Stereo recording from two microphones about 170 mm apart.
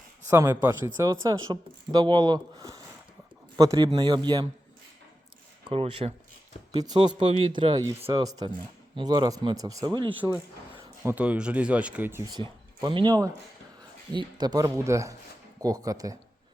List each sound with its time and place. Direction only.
0.3 s speech: 15° right (ahead or behind)
5.7 s speech: 35° right (ahead or behind)
6.7 s speech: 25° right (ahead or behind)
10.2 s speech: 10° right (ahead or behind)
12.3 s speech: 25° right (ahead or behind)